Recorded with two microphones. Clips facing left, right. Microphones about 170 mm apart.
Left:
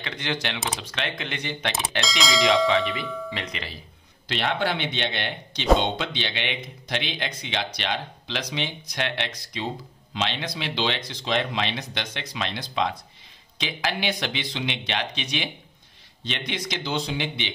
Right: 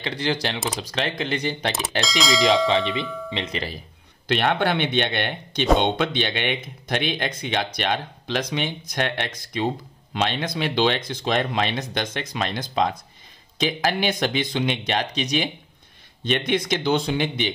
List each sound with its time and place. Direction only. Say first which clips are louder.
0.0 s speech: right 5 dB; 35° right (ahead or behind)
2.0 s speech: right 3 dB; centre (ahead or behind)
4.3 s speech: right 4 dB; 55° right (ahead or behind)
16.3 s speech: right 9 dB; 50° right (ahead or behind)